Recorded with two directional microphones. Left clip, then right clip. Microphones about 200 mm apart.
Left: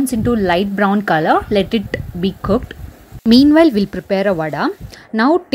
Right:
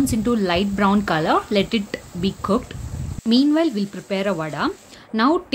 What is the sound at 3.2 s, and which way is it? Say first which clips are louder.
Speech: left 8 dB; 35° left (ahead or behind).